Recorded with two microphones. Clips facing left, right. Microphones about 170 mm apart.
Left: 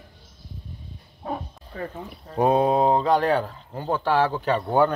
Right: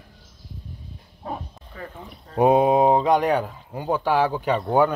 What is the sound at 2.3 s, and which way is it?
Speech, 15° right (ahead or behind).